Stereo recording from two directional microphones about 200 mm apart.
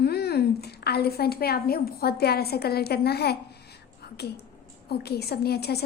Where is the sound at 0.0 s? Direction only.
55° left (ahead or behind).